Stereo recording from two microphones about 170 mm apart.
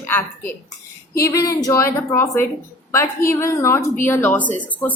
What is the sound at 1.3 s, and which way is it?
A woman's voice, 20° left (ahead or behind).